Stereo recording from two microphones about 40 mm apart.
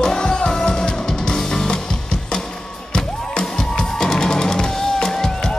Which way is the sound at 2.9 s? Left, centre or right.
Left.